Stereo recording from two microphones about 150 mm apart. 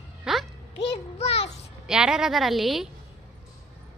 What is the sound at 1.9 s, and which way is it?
A woman's voice, 5° right (ahead or behind).